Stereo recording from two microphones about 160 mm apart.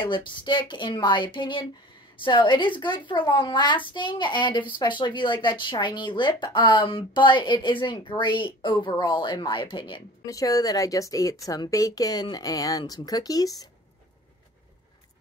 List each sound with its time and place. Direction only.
0.0 s a woman's voice: 30° left (ahead or behind)